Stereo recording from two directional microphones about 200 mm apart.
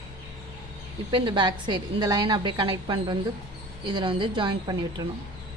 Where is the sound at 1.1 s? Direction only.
25° right (ahead or behind).